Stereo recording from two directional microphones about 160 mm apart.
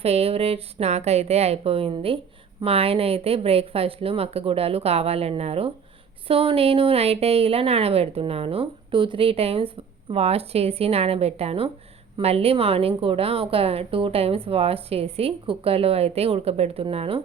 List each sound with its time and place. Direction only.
0.0 s speech: 40° right (ahead or behind)